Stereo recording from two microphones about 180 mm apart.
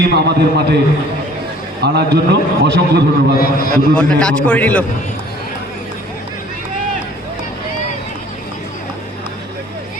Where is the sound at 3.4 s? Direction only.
55° left (ahead or behind).